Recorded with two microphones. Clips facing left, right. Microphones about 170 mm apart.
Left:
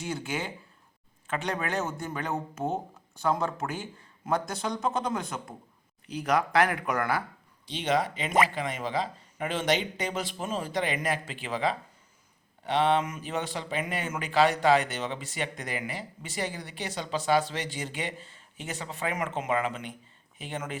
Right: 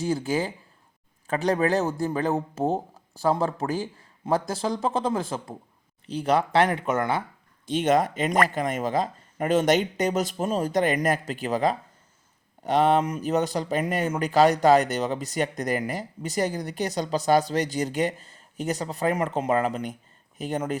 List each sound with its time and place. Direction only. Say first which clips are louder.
0.0 s speech: right 8 dB; 35° right (ahead or behind)
7.7 s speech: right 6 dB; 45° right (ahead or behind)